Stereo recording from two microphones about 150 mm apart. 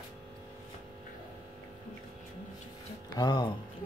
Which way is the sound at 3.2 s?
30° left (ahead or behind).